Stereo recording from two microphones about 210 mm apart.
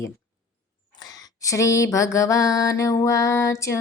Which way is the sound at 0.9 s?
20° left (ahead or behind).